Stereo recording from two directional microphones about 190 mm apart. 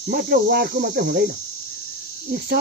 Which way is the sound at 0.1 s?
55° right (ahead or behind).